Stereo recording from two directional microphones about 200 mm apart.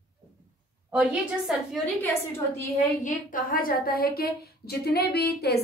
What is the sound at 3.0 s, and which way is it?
A woman's voice, 45° left (ahead or behind).